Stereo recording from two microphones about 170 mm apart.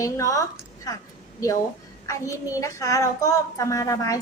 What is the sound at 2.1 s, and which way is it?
A woman's voice, 20° left (ahead or behind).